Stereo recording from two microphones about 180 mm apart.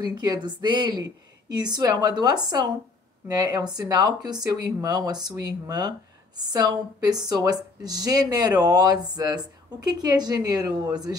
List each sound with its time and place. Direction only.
0.0 s a woman's voice: 25° right (ahead or behind)